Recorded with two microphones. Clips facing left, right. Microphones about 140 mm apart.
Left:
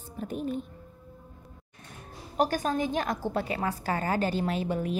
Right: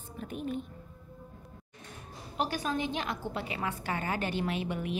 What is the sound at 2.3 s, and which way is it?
A woman's voice, 45° left (ahead or behind).